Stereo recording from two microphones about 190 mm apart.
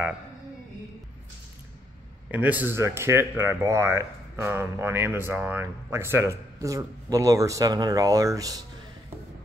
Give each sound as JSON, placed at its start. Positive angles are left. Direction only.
{"t": 2.3, "sound": "speech", "side_deg": -10}